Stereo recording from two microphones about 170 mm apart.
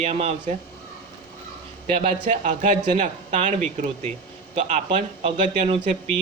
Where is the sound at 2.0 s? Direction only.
45° right (ahead or behind).